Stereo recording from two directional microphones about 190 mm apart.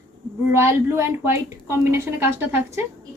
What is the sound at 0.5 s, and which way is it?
A woman's voice, 15° right (ahead or behind).